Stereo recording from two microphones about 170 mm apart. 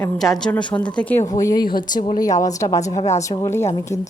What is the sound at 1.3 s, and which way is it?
A woman's voice, 20° left (ahead or behind).